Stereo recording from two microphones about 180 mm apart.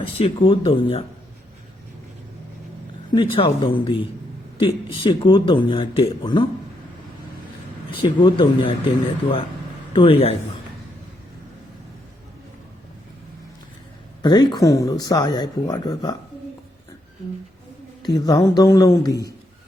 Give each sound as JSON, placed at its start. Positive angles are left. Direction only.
{"t": 0.0, "sound": "speech", "side_deg": 30}
{"t": 3.1, "sound": "speech", "side_deg": 30}
{"t": 8.2, "sound": "speech", "side_deg": 25}
{"t": 9.9, "sound": "a man's voice", "side_deg": 30}
{"t": 14.2, "sound": "speech", "side_deg": 25}
{"t": 18.0, "sound": "speech", "side_deg": 25}